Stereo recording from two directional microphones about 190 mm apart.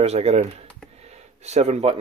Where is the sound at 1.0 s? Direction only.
35° right (ahead or behind).